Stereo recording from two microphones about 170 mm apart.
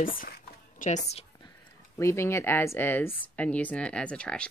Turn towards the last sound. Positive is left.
turn(degrees=5)  # may be behind; listen again after turning